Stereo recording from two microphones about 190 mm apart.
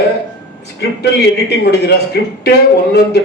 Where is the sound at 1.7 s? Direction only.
60° left (ahead or behind).